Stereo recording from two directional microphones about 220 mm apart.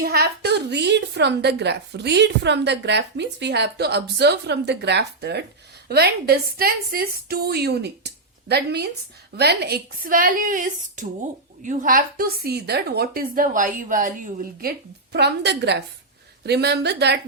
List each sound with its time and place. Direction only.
0.0 s a woman's voice: 45° right (ahead or behind)